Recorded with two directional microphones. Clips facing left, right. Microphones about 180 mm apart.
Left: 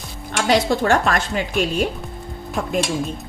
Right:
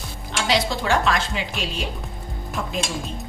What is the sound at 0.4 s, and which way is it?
Cutlery, 50° left (ahead or behind).